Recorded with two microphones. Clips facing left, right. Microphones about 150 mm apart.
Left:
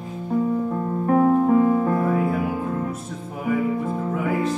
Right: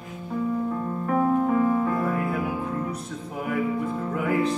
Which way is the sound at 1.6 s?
25° left (ahead or behind).